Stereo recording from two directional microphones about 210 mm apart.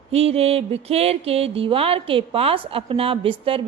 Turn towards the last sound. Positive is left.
turn(degrees=-25)  # may be behind; listen again after turning